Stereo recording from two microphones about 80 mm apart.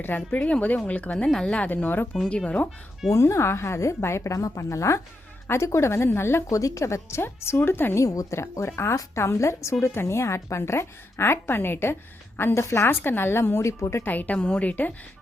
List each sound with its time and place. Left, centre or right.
0.3 s a woman's voice: left
3.1 s a woman's voice: left
6.5 s a woman's voice: left
8.0 s a woman's voice: left
14.0 s a woman's voice: left